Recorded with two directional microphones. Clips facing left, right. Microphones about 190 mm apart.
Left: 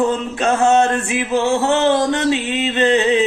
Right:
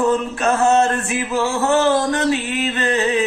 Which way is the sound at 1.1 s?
20° left (ahead or behind).